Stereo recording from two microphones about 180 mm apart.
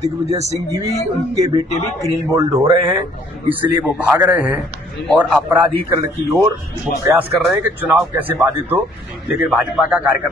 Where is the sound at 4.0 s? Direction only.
10° right (ahead or behind).